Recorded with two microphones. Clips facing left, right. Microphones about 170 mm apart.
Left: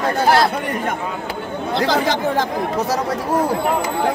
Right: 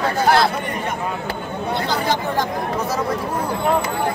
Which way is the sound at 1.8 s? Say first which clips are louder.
Left 5 dB; 90° left.